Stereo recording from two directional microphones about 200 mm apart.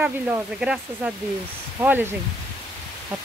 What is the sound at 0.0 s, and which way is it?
Speech, 5° right (ahead or behind).